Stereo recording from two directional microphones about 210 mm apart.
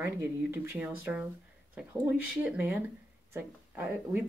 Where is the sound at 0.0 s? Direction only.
10° right (ahead or behind).